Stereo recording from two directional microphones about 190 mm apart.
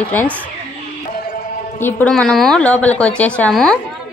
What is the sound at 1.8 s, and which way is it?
A woman's voice, 10° left (ahead or behind).